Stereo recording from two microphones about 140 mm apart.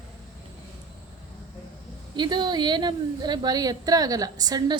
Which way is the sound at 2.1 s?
30° right (ahead or behind).